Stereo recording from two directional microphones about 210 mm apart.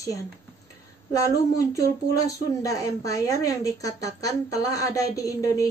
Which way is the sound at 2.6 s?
15° left (ahead or behind).